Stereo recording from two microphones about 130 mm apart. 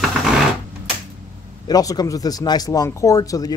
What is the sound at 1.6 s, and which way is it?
Speech, 30° left (ahead or behind).